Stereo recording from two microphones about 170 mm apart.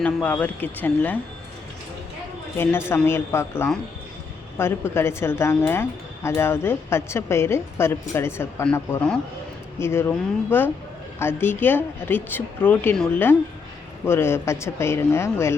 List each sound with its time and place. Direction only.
0.0 s a woman's voice: 5° left (ahead or behind)
2.6 s a woman's voice: 15° left (ahead or behind)